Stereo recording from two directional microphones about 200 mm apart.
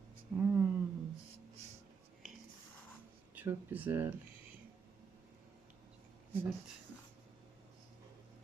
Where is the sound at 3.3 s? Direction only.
10° right (ahead or behind).